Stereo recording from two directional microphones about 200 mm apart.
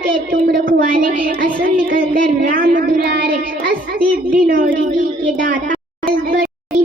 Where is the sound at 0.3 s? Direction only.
50° right (ahead or behind).